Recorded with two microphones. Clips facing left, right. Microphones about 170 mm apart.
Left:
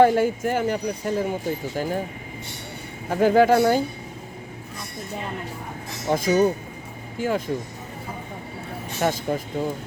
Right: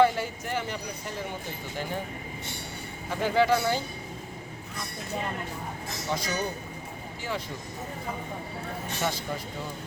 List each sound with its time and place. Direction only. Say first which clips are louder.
0.0 s a woman's voice: left 6 dB; 50° left (ahead or behind)
3.1 s a woman's voice: left 7 dB; 45° left (ahead or behind)
6.1 s a woman's voice: left 12 dB; 50° left (ahead or behind)
9.0 s a woman's voice: left 9 dB; 50° left (ahead or behind)